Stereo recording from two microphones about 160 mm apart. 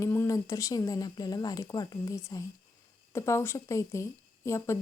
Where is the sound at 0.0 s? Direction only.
15° left (ahead or behind).